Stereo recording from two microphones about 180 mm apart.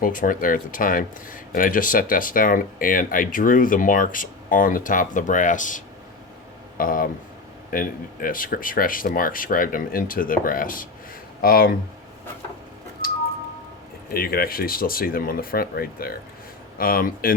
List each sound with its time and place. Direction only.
0.0 s speech: 50° left (ahead or behind)
14.1 s speech: 55° left (ahead or behind)